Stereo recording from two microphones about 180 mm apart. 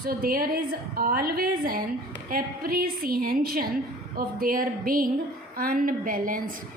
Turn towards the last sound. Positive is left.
turn(degrees=-50)  # may be behind; listen again after turning